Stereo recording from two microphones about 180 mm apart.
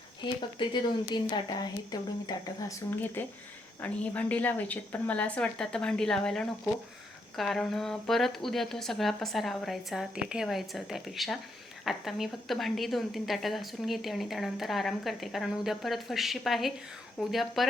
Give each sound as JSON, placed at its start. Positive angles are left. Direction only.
{"t": 0.6, "sound": "a woman's voice", "side_deg": 25}